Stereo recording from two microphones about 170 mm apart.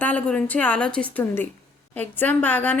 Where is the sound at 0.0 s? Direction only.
5° left (ahead or behind).